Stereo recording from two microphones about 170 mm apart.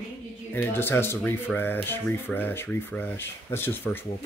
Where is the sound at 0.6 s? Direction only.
15° left (ahead or behind).